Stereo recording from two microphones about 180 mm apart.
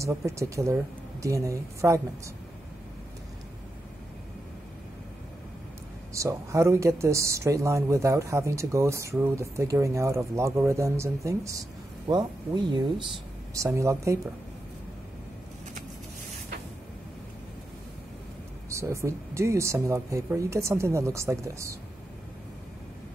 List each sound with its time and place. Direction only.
0.0 s speech: 15° right (ahead or behind)
6.1 s speech: 15° right (ahead or behind)
18.7 s speech: 15° right (ahead or behind)